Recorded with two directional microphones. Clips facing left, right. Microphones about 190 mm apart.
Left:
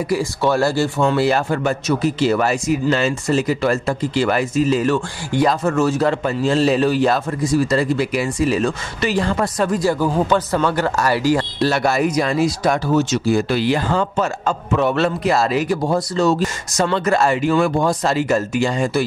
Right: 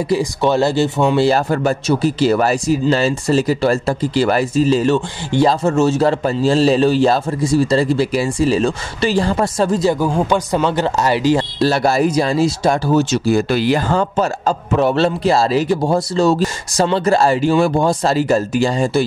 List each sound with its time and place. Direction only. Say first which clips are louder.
0.1 s speech: right 3 dB; 20° right (ahead or behind)